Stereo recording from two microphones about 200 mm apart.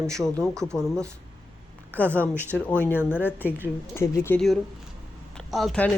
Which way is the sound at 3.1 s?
10° left (ahead or behind).